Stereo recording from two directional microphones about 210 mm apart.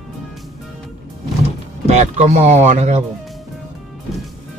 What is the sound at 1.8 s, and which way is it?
Speech, 30° right (ahead or behind).